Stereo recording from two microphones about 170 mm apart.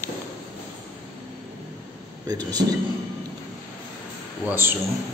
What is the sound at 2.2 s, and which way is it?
Speech, 25° right (ahead or behind).